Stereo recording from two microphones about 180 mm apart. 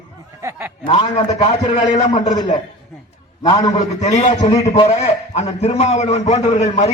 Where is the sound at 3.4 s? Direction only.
25° left (ahead or behind).